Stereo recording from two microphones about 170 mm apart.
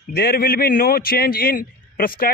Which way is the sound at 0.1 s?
65° left (ahead or behind).